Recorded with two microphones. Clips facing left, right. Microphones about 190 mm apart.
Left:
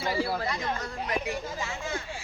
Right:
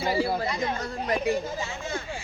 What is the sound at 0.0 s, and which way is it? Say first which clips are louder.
Speech: right 3 dB; 15° right (ahead or behind).